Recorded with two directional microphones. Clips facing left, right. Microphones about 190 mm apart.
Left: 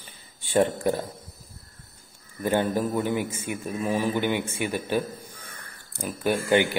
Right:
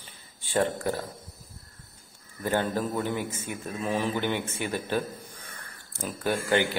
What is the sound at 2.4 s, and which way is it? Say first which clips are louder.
A man's voice: left 3 dB; 15° left (ahead or behind).